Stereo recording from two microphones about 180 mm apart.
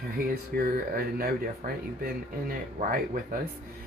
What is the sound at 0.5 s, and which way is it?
Speech, 60° right (ahead or behind).